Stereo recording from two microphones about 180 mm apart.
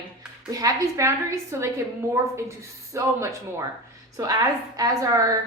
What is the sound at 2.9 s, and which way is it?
A woman's voice, 15° right (ahead or behind).